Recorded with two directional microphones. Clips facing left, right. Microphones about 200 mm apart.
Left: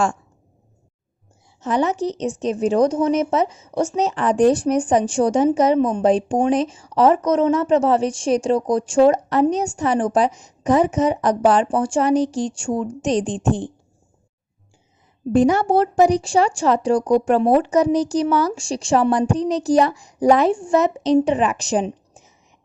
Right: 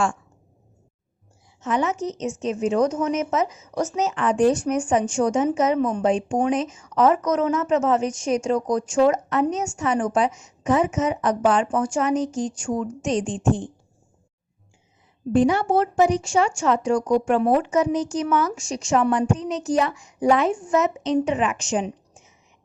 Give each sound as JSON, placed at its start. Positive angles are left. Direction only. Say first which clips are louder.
{"t": 1.6, "sound": "speech", "louder": "left 4 dB", "side_deg": 35}
{"t": 15.3, "sound": "speech", "louder": "left 3 dB", "side_deg": 40}